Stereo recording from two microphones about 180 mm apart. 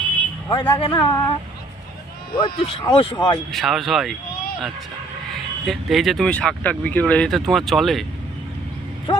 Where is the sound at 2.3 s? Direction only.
30° left (ahead or behind).